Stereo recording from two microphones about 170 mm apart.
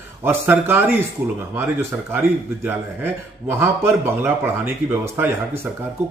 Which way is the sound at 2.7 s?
15° right (ahead or behind).